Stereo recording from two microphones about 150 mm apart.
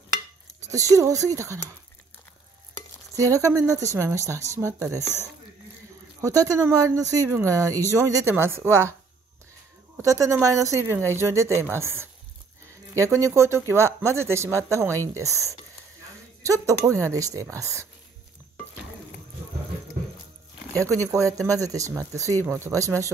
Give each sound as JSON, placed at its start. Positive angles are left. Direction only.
{"t": 0.7, "sound": "speech", "side_deg": -20}
{"t": 3.2, "sound": "speech", "side_deg": -20}
{"t": 5.0, "sound": "speech", "side_deg": 15}
{"t": 6.2, "sound": "speech", "side_deg": -25}
{"t": 10.0, "sound": "speech", "side_deg": -20}
{"t": 20.7, "sound": "speech", "side_deg": -20}